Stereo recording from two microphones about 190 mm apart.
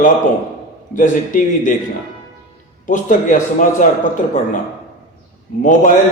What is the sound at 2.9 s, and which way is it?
A man's voice, 45° left (ahead or behind).